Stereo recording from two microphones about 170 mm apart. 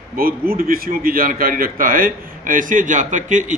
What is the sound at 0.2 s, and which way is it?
A man's voice, 60° right (ahead or behind).